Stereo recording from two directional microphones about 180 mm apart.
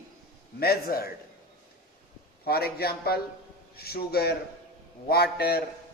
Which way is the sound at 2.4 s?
60° left (ahead or behind).